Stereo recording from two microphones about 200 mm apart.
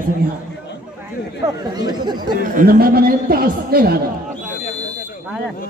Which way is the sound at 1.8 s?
20° right (ahead or behind).